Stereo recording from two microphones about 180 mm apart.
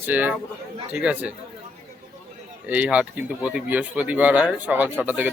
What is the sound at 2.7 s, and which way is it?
Speech, 10° right (ahead or behind).